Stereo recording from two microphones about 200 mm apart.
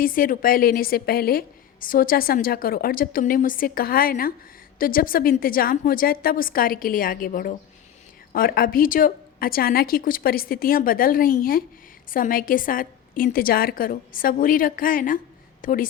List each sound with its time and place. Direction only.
0.0 s a woman's voice: 45° left (ahead or behind)